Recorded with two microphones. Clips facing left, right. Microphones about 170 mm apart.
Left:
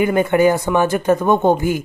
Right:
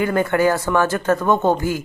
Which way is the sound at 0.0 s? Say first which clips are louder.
Left 3 dB; 20° left (ahead or behind).